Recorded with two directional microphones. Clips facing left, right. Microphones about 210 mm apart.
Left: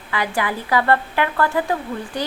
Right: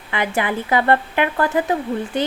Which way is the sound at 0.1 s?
20° right (ahead or behind).